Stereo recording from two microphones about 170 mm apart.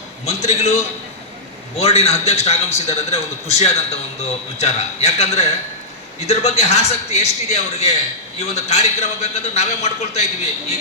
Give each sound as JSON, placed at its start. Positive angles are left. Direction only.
{"t": 0.3, "sound": "a man's voice", "side_deg": 40}